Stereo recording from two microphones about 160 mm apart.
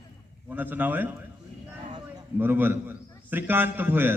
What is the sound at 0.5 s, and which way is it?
Speech, 10° right (ahead or behind).